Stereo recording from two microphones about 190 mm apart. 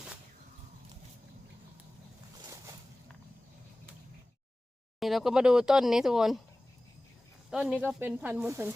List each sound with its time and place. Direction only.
4.9 s speech: centre (ahead or behind)
7.5 s speech: 5° right (ahead or behind)